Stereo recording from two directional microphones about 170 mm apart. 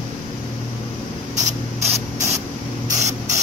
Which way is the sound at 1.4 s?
40° right (ahead or behind).